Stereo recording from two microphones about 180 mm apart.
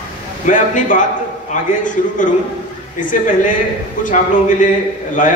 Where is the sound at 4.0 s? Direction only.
45° left (ahead or behind).